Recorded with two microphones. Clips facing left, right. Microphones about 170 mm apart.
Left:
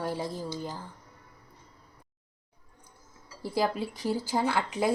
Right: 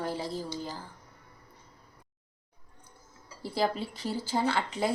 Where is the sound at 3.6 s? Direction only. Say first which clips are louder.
Even; 15° left (ahead or behind).